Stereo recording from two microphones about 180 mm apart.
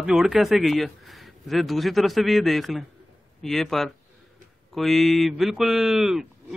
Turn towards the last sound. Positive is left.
turn(degrees=0)  # may be behind; listen again after turning